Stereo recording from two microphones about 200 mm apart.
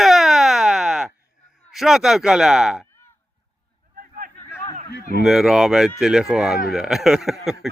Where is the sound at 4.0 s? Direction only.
45° right (ahead or behind).